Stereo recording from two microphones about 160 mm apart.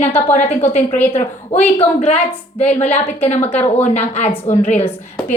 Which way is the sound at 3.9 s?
45° left (ahead or behind).